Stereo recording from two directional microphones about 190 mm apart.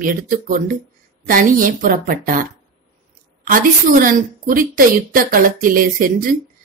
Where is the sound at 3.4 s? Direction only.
45° right (ahead or behind).